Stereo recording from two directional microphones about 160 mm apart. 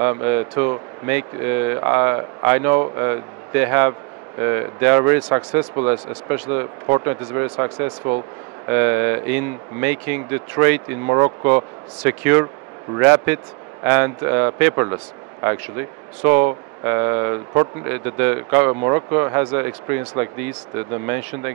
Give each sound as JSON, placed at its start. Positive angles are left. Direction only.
{"t": 0.0, "sound": "speech", "side_deg": -15}